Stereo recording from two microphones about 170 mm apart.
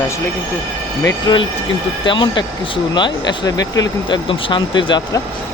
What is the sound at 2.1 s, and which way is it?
Speech, 30° left (ahead or behind).